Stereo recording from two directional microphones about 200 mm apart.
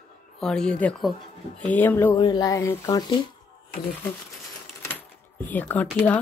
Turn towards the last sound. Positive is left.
turn(degrees=10)  # may be behind; listen again after turning